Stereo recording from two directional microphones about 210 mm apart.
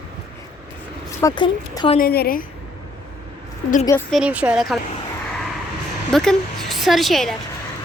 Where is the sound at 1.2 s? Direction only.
20° left (ahead or behind).